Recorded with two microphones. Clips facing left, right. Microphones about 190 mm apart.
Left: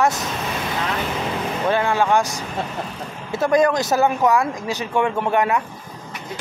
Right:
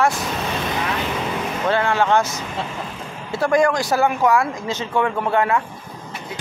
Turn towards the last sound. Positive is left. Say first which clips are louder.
# even
turn(degrees=20)  # may be behind; listen again after turning